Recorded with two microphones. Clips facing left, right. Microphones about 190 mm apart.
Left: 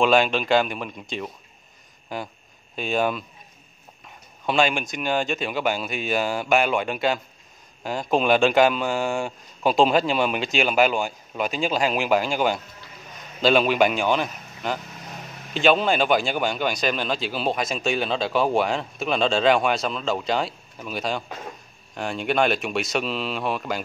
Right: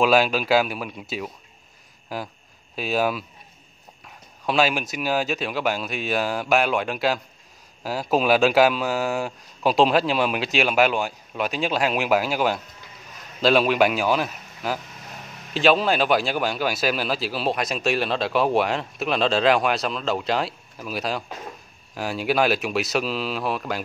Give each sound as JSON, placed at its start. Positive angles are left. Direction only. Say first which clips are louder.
{"t": 0.0, "sound": "speech", "louder": "even", "side_deg": -5}
{"t": 4.5, "sound": "speech", "louder": "even", "side_deg": -5}